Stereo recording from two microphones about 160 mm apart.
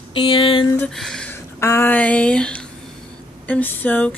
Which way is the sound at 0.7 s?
5° left (ahead or behind).